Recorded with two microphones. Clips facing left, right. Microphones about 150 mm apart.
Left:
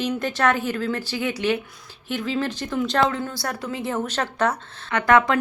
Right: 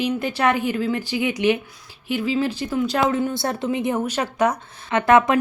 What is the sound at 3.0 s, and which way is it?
A woman's voice, 15° right (ahead or behind).